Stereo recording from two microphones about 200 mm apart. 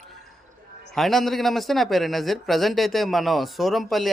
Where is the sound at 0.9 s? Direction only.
Centre (ahead or behind).